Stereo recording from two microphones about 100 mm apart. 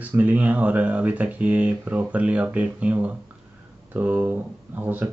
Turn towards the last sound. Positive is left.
turn(degrees=-20)  # may be behind; listen again after turning